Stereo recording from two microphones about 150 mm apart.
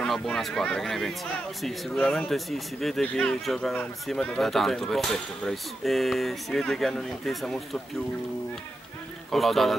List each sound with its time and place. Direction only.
0.0 s speech: 5° left (ahead or behind)
9.3 s speech: centre (ahead or behind)